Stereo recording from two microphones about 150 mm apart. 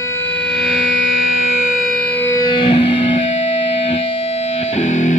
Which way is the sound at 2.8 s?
40° left (ahead or behind).